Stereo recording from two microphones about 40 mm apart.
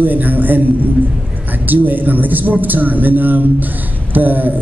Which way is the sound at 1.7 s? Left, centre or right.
Right.